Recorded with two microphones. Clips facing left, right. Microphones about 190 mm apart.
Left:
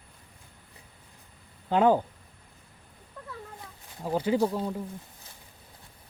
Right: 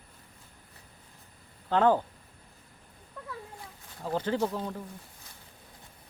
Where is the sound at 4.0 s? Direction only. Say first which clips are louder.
Left 4 dB; 10° left (ahead or behind).